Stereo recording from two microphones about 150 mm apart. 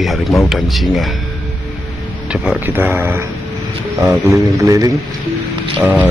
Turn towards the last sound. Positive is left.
turn(degrees=-10)  # may be behind; listen again after turning